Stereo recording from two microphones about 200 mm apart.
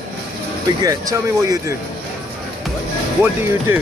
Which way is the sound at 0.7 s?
20° right (ahead or behind).